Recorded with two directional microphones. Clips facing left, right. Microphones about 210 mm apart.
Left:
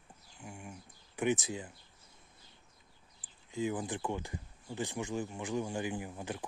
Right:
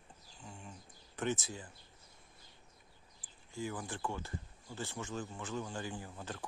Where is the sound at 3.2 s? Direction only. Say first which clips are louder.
Left 6 dB; 20° left (ahead or behind).